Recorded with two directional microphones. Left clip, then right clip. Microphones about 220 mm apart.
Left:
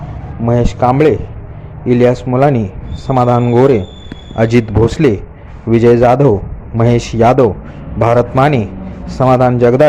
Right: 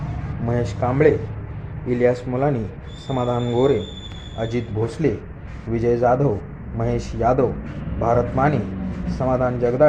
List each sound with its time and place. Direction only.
0.4 s a man's voice: 25° left (ahead or behind)